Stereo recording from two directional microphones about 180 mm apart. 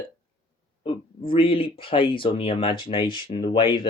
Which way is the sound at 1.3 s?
30° left (ahead or behind).